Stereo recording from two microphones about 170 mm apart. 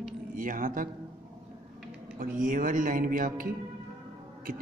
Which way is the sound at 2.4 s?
50° right (ahead or behind).